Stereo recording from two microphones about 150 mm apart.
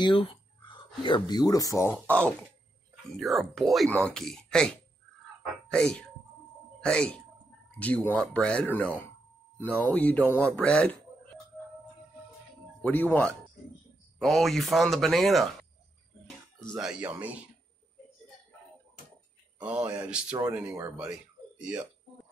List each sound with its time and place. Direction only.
0.0 s speech: 35° left (ahead or behind); by 2.3 s 10° left (ahead or behind)
3.2 s speech: centre (ahead or behind)
12.8 s speech: 10° left (ahead or behind)
14.2 s speech: centre (ahead or behind)
16.5 s speech: centre (ahead or behind)
19.6 s speech: 10° right (ahead or behind)
20.3 s speech: 25° right (ahead or behind)
21.5 s speech: 10° right (ahead or behind)